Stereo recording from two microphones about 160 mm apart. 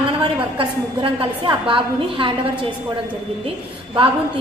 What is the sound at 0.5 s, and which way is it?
A woman's voice, 30° right (ahead or behind).